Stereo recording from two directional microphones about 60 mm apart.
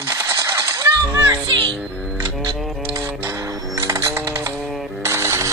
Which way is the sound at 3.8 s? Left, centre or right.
Right.